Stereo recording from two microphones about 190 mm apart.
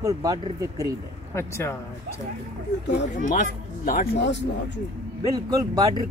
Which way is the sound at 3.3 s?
45° left (ahead or behind).